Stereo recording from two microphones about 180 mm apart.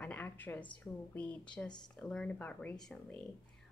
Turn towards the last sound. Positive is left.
turn(degrees=5)  # may be behind; listen again after turning